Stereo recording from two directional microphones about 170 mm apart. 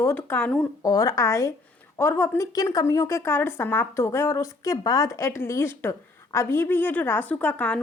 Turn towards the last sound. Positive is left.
turn(degrees=10)  # may be behind; listen again after turning